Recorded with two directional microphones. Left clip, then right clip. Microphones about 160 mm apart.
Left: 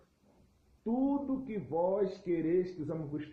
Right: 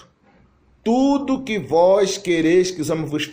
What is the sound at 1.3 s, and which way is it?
A man's voice, 30° right (ahead or behind).